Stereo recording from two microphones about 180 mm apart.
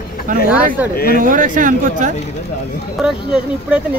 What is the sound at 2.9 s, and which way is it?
Speech, 5° right (ahead or behind).